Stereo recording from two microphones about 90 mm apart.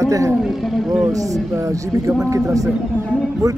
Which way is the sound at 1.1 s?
35° right (ahead or behind).